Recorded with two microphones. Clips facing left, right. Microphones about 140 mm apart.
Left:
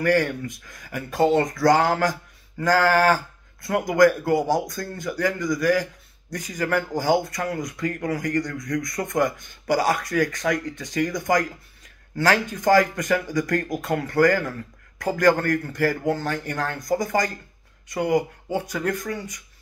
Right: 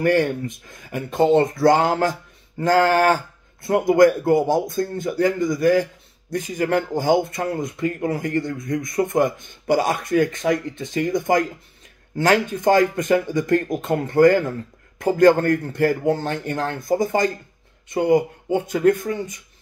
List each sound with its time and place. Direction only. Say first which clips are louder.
0.0 s speech: right 3 dB; 25° right (ahead or behind)